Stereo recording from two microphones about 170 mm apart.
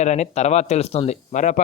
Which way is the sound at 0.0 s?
40° left (ahead or behind).